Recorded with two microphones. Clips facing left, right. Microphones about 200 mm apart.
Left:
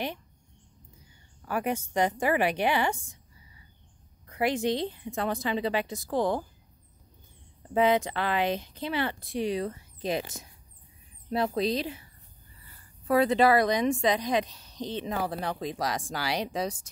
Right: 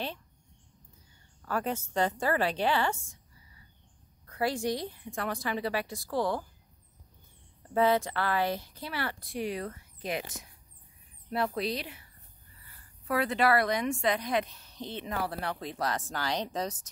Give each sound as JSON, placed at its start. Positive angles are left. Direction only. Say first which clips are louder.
{"t": 1.4, "sound": "speech", "louder": "left 2 dB", "side_deg": 15}
{"t": 4.3, "sound": "speech", "louder": "left 3 dB", "side_deg": 20}
{"t": 7.7, "sound": "speech", "louder": "left 2 dB", "side_deg": 20}
{"t": 13.0, "sound": "speech", "louder": "left 5 dB", "side_deg": 20}